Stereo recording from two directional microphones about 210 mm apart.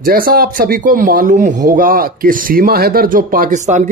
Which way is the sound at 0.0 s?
45° right (ahead or behind).